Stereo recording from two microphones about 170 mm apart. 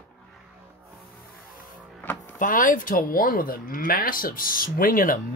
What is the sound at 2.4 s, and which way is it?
Speech, 55° left (ahead or behind).